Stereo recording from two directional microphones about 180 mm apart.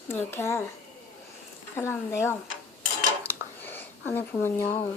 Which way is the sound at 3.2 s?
10° left (ahead or behind).